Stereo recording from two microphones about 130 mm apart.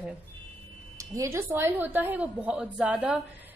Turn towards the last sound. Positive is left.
turn(degrees=-5)  # may be behind; listen again after turning